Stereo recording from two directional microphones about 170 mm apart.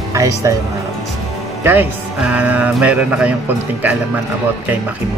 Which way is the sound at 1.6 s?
10° right (ahead or behind).